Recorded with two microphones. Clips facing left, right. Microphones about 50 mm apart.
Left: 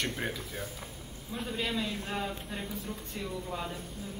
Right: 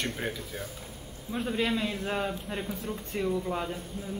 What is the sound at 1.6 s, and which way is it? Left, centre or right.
Speech, right.